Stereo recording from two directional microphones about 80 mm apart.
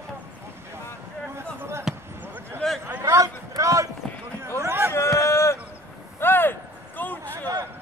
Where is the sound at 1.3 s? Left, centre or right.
Right.